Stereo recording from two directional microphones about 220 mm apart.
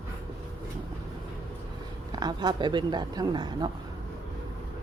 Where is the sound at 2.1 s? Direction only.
20° right (ahead or behind).